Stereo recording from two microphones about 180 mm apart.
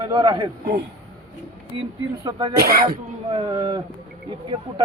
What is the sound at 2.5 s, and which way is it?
Speech, 55° right (ahead or behind).